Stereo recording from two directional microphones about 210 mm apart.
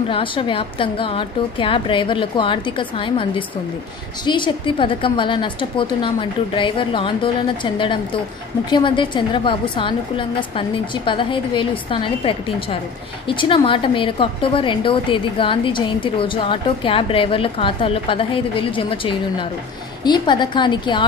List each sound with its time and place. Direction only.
0.1 s a woman's voice: 25° left (ahead or behind)